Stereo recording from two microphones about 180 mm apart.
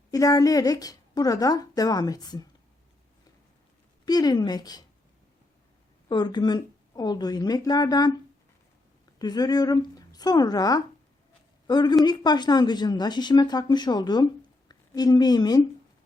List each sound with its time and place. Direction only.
0.1 s speech: 20° left (ahead or behind)
4.0 s speech: 20° left (ahead or behind)
6.1 s speech: 25° left (ahead or behind)
9.1 s a woman's voice: 20° left (ahead or behind)